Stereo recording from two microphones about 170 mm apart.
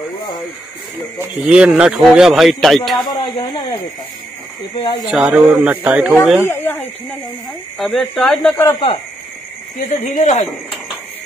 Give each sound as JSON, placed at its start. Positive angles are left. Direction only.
{"t": 1.4, "sound": "speech", "side_deg": -5}
{"t": 3.0, "sound": "speech", "side_deg": 25}
{"t": 4.7, "sound": "speech", "side_deg": 35}
{"t": 5.1, "sound": "a man's voice", "side_deg": -5}
{"t": 6.5, "sound": "a sound", "side_deg": 10}
{"t": 7.8, "sound": "speech", "side_deg": 0}
{"t": 9.8, "sound": "speech", "side_deg": 45}